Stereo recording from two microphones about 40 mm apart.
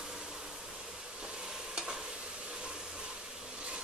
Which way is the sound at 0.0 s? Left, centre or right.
Centre.